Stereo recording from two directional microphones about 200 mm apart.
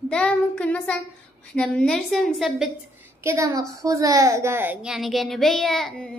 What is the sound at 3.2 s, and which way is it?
A child's voice, 15° right (ahead or behind).